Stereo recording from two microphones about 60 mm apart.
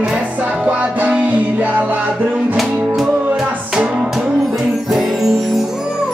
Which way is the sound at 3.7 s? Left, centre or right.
Centre.